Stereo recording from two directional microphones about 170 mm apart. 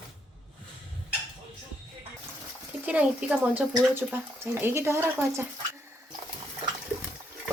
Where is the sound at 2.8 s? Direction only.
5° right (ahead or behind).